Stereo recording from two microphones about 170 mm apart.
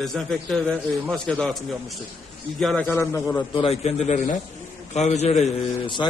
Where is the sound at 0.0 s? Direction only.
Centre (ahead or behind).